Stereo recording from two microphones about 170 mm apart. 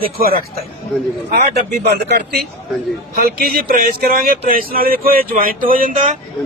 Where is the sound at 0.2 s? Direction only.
60° right (ahead or behind).